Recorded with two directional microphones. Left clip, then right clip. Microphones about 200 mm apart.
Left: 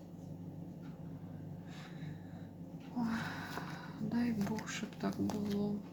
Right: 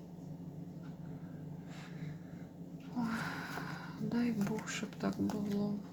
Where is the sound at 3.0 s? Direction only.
15° right (ahead or behind).